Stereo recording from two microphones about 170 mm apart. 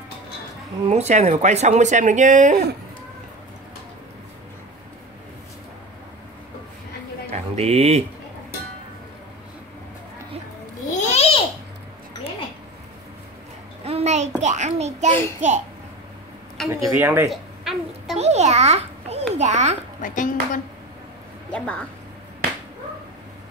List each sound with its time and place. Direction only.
0.8 s speech: 40° right (ahead or behind)
7.2 s a sound: 40° right (ahead or behind)
10.9 s babbling: 45° left (ahead or behind)
13.8 s child singing: 40° right (ahead or behind)
15.4 s speech: 45° right (ahead or behind)
16.8 s speech: 10° right (ahead or behind)
17.3 s babbling: centre (ahead or behind)
18.1 s a sound: 40° right (ahead or behind)
19.3 s a child's voice: 40° right (ahead or behind)
20.0 s a woman's voice: 50° left (ahead or behind)
21.5 s a woman's voice: 5° left (ahead or behind)